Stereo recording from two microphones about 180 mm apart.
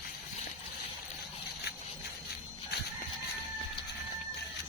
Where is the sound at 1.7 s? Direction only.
65° left (ahead or behind).